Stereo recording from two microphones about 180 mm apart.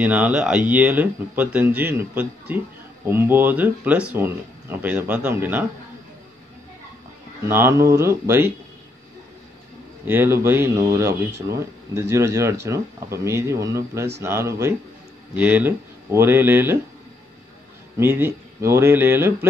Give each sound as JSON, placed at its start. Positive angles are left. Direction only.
{"t": 0.0, "sound": "speech", "side_deg": -10}
{"t": 7.4, "sound": "speech", "side_deg": -15}
{"t": 10.0, "sound": "speech", "side_deg": -10}
{"t": 17.9, "sound": "speech", "side_deg": -10}